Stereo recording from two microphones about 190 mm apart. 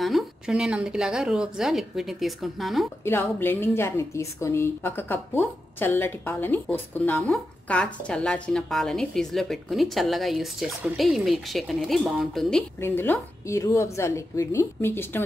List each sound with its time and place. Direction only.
0.0 s a woman's voice: centre (ahead or behind)
3.0 s a woman's voice: 10° left (ahead or behind)